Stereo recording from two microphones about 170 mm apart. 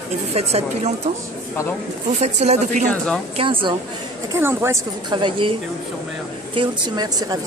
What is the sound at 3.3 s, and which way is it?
Speech, 30° right (ahead or behind).